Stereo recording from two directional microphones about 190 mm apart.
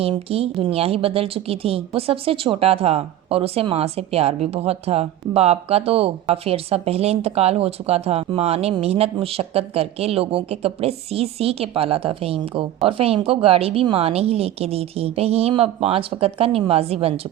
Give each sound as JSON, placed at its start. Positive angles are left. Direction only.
{"t": 0.0, "sound": "speech", "side_deg": -30}